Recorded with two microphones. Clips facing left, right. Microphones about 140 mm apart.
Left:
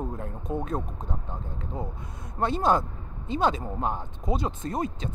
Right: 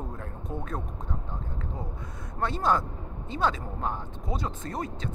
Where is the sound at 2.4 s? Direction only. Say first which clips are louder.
Left 3 dB; 20° left (ahead or behind).